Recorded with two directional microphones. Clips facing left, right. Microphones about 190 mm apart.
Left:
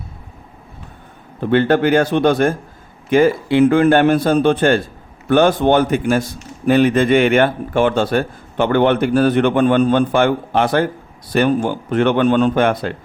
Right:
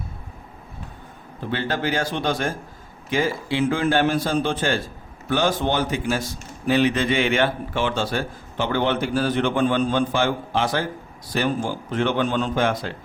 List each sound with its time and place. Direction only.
1.4 s a man's voice: 60° left (ahead or behind)